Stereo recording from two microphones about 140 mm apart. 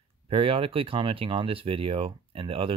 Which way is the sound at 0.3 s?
40° right (ahead or behind).